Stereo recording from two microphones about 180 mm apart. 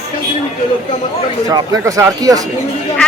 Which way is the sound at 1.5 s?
20° right (ahead or behind).